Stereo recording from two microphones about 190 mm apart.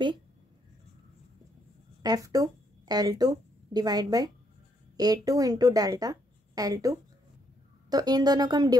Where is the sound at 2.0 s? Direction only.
20° right (ahead or behind).